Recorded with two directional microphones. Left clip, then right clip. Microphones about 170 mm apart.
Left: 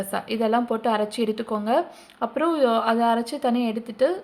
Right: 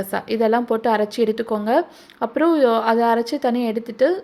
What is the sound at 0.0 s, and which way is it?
A woman's voice, 20° right (ahead or behind).